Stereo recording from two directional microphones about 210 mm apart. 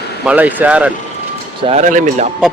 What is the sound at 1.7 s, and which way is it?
Speech, 35° right (ahead or behind).